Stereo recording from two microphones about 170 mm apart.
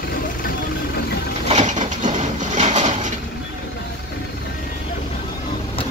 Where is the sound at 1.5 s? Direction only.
45° right (ahead or behind).